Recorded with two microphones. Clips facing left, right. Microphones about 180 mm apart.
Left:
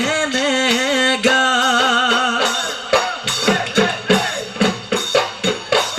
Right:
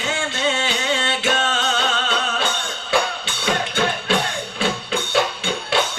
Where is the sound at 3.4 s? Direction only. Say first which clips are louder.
Left 5 dB; 65° left (ahead or behind).